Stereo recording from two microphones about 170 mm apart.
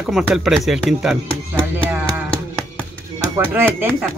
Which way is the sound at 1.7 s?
10° right (ahead or behind).